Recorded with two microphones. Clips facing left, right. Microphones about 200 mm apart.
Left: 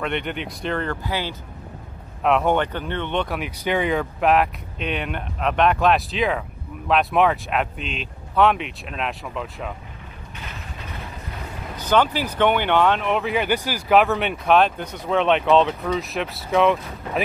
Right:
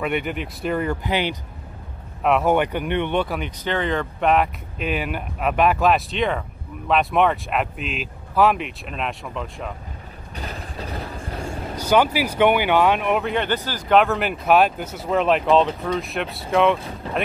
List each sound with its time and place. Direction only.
0.0 s speech: 5° right (ahead or behind)
1.0 s speech: 20° right (ahead or behind)
2.2 s speech: 5° right (ahead or behind)
3.3 s speech: 10° left (ahead or behind)
10.3 s vehicle: 35° right (ahead or behind)
11.7 s speech: 10° right (ahead or behind)
13.3 s speech: 10° left (ahead or behind)